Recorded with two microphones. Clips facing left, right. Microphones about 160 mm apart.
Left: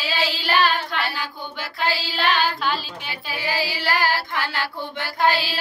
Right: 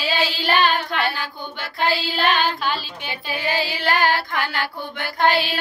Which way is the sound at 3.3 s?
20° right (ahead or behind).